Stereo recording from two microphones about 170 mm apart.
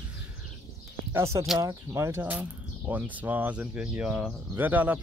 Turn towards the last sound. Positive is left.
turn(degrees=-10)  # may be behind; listen again after turning